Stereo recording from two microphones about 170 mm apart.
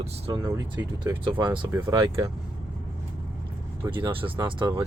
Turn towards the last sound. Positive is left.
turn(degrees=-25)  # may be behind; listen again after turning